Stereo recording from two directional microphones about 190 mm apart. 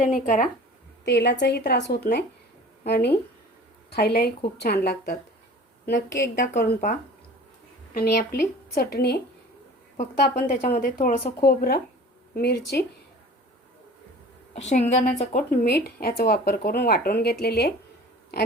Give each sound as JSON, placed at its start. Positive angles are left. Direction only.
{"t": 0.0, "sound": "speech", "side_deg": 45}
{"t": 1.0, "sound": "a woman's voice", "side_deg": 65}
{"t": 6.5, "sound": "speech", "side_deg": 40}
{"t": 7.9, "sound": "a woman's voice", "side_deg": 50}
{"t": 10.3, "sound": "a woman's voice", "side_deg": 40}
{"t": 14.5, "sound": "a woman's voice", "side_deg": 35}